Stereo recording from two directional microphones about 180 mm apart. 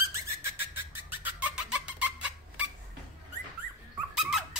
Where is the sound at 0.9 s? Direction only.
10° right (ahead or behind).